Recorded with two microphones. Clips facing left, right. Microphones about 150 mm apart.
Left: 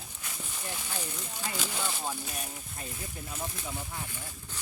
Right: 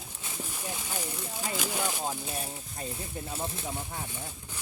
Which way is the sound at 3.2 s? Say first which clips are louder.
Right 2 dB; 30° right (ahead or behind).